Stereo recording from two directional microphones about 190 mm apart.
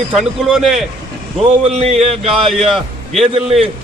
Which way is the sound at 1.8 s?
35° right (ahead or behind).